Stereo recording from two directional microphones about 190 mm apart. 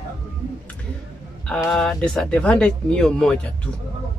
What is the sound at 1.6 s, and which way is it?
Speech, 5° left (ahead or behind).